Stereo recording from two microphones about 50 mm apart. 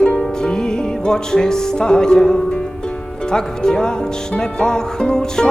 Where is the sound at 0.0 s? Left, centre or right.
Centre.